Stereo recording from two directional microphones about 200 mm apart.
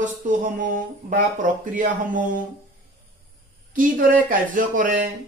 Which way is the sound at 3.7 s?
40° right (ahead or behind).